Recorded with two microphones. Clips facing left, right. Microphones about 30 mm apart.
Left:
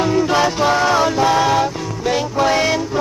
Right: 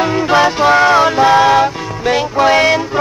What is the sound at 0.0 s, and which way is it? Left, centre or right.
Music, right.